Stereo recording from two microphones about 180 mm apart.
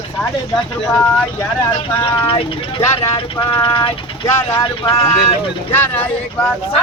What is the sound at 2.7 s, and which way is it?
Speech, 25° left (ahead or behind).